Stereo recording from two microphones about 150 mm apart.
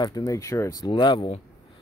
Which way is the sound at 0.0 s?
25° left (ahead or behind).